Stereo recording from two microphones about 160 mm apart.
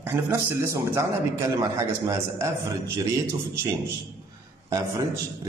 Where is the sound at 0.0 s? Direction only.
15° right (ahead or behind).